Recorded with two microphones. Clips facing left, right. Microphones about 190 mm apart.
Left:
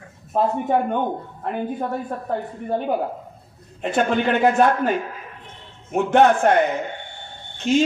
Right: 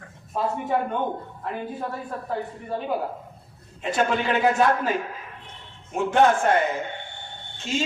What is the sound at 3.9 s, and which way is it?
A man's voice, 55° left (ahead or behind).